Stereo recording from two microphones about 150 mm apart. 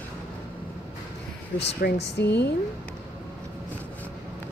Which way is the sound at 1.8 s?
80° left.